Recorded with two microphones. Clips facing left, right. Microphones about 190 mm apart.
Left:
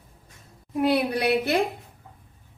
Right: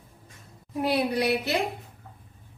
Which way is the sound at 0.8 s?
60° left (ahead or behind).